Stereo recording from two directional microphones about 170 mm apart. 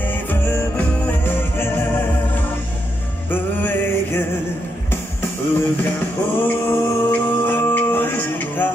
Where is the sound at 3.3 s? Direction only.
10° left (ahead or behind).